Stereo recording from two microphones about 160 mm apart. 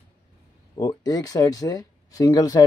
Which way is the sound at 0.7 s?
25° left (ahead or behind).